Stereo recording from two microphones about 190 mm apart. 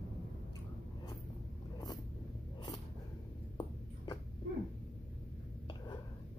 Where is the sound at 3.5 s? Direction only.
25° left (ahead or behind).